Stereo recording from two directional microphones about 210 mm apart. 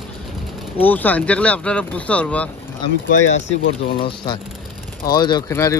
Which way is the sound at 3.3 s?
30° left (ahead or behind).